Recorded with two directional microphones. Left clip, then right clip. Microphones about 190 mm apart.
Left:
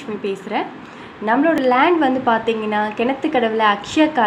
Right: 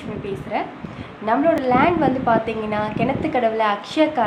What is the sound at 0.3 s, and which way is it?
A woman's voice, 20° left (ahead or behind).